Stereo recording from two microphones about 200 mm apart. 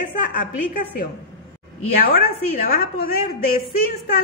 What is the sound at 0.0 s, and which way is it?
Speech, 40° left (ahead or behind).